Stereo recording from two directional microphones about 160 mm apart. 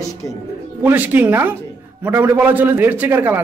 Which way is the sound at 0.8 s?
10° right (ahead or behind).